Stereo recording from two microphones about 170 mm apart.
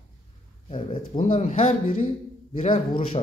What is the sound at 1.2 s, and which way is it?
A man's voice, 50° left (ahead or behind).